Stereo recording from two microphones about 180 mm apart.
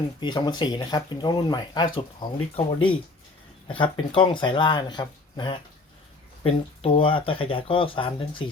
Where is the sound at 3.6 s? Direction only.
25° left (ahead or behind).